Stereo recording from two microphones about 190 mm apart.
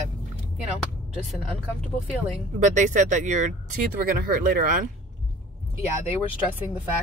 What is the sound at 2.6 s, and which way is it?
Speech, 40° right (ahead or behind).